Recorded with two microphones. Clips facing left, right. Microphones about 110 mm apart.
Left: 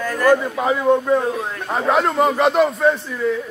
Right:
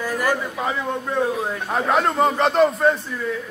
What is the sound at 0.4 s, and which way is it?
Speech, 15° left (ahead or behind).